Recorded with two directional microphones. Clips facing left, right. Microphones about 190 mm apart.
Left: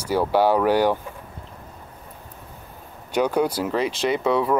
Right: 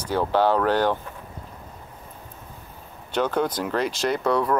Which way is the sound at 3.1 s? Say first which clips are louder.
Left 3 dB; 10° left (ahead or behind).